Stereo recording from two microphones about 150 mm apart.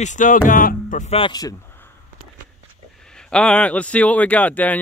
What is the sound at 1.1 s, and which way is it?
Speech, 30° left (ahead or behind).